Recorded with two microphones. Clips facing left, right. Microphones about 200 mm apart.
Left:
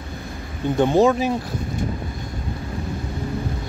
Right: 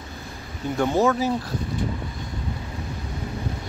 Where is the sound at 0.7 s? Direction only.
20° left (ahead or behind).